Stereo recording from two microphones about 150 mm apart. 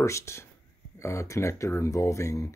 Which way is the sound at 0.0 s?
20° left (ahead or behind).